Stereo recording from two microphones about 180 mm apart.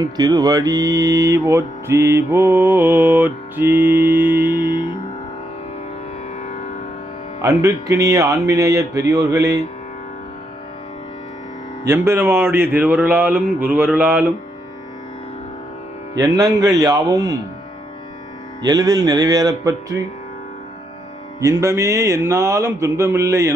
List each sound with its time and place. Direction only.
0.0 s music: 20° right (ahead or behind)
4.6 s music: 25° left (ahead or behind)
7.4 s music: 15° right (ahead or behind)
11.8 s music: 15° right (ahead or behind)
16.2 s speech: 20° right (ahead or behind)
18.6 s speech: 20° right (ahead or behind)
21.4 s music: 20° right (ahead or behind)